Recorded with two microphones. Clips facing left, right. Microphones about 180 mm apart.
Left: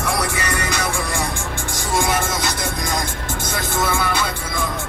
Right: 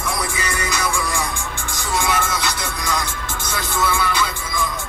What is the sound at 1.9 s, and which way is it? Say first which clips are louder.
Music: left 1 dB; 50° left (ahead or behind).